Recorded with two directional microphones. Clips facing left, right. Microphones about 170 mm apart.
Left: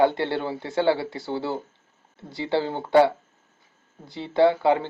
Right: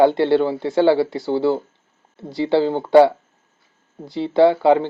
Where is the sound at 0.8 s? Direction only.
25° right (ahead or behind).